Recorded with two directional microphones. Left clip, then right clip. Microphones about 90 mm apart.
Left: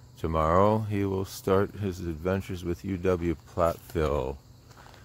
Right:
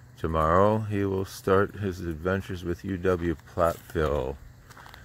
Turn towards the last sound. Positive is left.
turn(degrees=0)  # may be behind; listen again after turning